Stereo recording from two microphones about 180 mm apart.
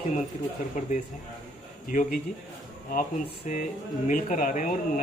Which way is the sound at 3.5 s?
45° left (ahead or behind).